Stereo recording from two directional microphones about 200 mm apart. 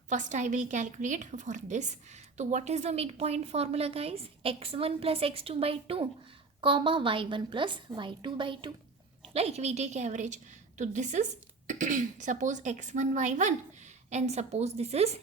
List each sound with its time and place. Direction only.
0.1 s a woman's voice: 40° right (ahead or behind)